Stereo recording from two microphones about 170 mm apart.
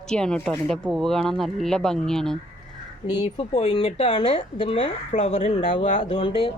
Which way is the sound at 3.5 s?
35° left (ahead or behind).